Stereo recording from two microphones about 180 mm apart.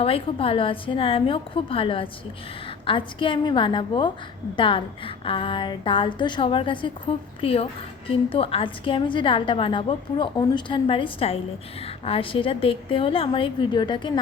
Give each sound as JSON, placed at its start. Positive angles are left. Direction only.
{"t": 0.0, "sound": "a woman's voice", "side_deg": 30}